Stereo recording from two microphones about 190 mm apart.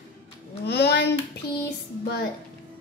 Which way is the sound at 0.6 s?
60° left (ahead or behind).